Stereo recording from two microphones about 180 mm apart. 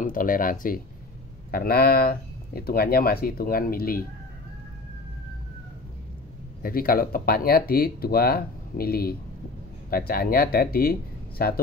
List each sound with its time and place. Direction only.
0.0 s speech: 50° left (ahead or behind)
6.6 s speech: 55° left (ahead or behind)